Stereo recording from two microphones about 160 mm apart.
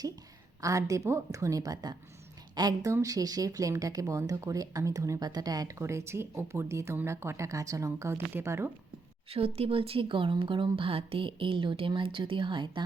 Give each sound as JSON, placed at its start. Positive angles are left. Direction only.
{"t": 0.6, "sound": "speech", "side_deg": -20}
{"t": 9.3, "sound": "a woman's voice", "side_deg": -40}